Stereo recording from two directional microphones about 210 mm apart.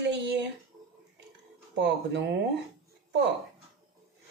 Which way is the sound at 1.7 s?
55° right (ahead or behind).